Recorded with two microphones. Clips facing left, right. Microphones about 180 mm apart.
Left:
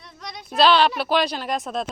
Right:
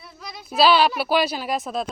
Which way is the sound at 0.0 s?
5° right (ahead or behind).